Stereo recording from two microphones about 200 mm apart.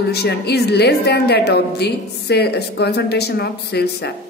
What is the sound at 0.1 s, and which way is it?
A woman's voice, 55° left (ahead or behind).